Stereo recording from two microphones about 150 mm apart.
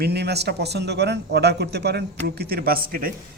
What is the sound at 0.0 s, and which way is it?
A man's voice, 90° right.